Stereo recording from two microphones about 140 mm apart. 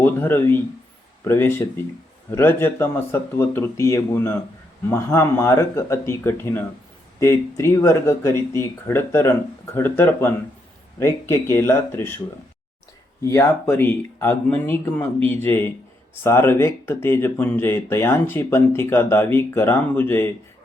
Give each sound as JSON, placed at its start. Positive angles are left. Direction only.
{"t": 0.0, "sound": "speech", "side_deg": 15}
{"t": 13.2, "sound": "speech", "side_deg": 20}